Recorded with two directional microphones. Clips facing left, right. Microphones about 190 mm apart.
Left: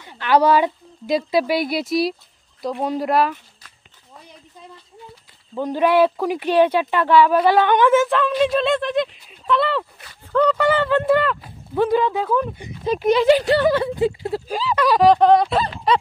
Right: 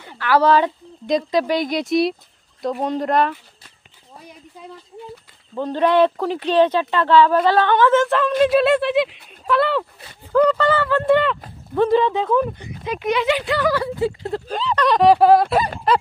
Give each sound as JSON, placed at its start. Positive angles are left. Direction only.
{"t": 0.2, "sound": "speech", "side_deg": 15}
{"t": 5.6, "sound": "speech", "side_deg": 10}
{"t": 10.6, "sound": "speech", "side_deg": 15}
{"t": 11.1, "sound": "speech", "side_deg": 0}
{"t": 12.8, "sound": "speech", "side_deg": 35}
{"t": 13.7, "sound": "speech", "side_deg": 20}
{"t": 14.3, "sound": "speech", "side_deg": 5}